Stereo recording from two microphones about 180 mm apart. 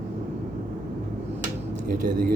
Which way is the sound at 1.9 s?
50° right (ahead or behind).